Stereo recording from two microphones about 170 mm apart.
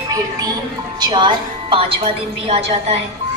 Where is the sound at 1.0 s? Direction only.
25° right (ahead or behind).